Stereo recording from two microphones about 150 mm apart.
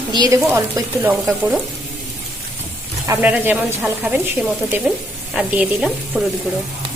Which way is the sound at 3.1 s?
10° right (ahead or behind).